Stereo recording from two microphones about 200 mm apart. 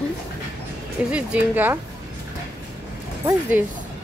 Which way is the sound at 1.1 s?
5° right (ahead or behind).